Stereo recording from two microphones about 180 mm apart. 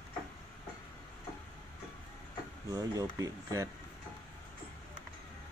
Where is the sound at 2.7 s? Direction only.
20° right (ahead or behind).